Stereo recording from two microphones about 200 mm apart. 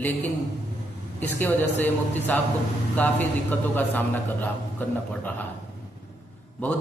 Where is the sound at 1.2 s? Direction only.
10° left (ahead or behind).